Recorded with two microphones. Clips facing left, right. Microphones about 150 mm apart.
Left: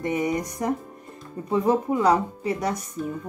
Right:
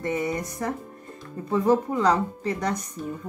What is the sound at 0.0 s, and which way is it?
Speech, 15° left (ahead or behind).